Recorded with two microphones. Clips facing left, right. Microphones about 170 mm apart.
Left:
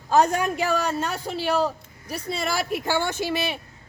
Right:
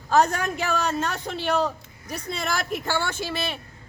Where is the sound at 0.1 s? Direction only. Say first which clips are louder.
Left 1 dB; 10° left (ahead or behind).